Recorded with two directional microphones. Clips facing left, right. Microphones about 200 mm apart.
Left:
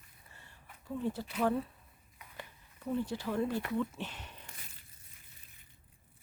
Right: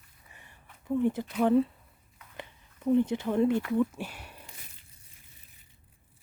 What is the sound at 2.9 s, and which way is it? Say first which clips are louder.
Speech: right 9 dB; 20° right (ahead or behind).